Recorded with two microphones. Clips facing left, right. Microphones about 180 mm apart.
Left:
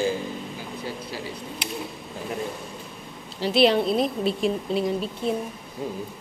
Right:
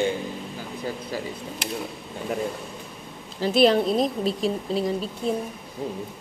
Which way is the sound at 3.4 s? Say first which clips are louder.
Right 1 dB; 45° right (ahead or behind).